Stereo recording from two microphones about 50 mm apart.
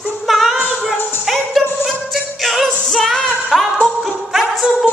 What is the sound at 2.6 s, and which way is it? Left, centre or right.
Music, centre.